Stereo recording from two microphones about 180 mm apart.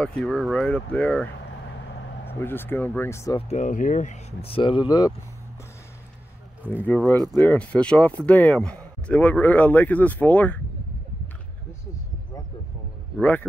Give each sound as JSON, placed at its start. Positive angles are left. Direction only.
{"t": 0.0, "sound": "speech", "side_deg": 5}
{"t": 3.3, "sound": "speech", "side_deg": 40}
{"t": 6.7, "sound": "speech", "side_deg": -10}
{"t": 7.3, "sound": "speech", "side_deg": 5}
{"t": 13.2, "sound": "speech", "side_deg": 10}